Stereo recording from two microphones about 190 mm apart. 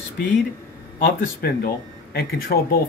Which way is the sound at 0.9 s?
45° left (ahead or behind).